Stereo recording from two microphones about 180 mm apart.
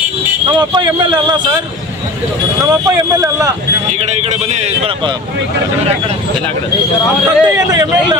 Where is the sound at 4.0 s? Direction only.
40° right (ahead or behind).